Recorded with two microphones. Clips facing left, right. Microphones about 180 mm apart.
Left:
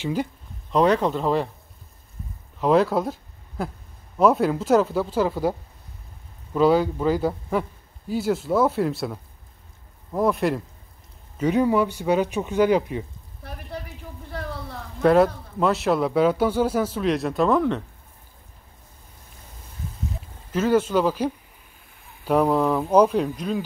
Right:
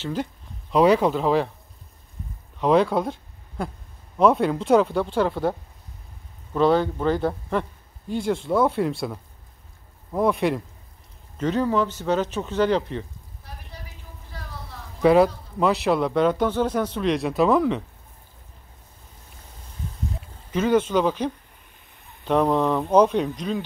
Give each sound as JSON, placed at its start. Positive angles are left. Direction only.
{"t": 0.0, "sound": "speech", "side_deg": 10}
{"t": 0.7, "sound": "speech", "side_deg": -5}
{"t": 2.6, "sound": "speech", "side_deg": 0}
{"t": 11.3, "sound": "speech", "side_deg": 10}
{"t": 13.4, "sound": "a sound", "side_deg": 60}
{"t": 15.0, "sound": "speech", "side_deg": 0}
{"t": 20.5, "sound": "speech", "side_deg": 5}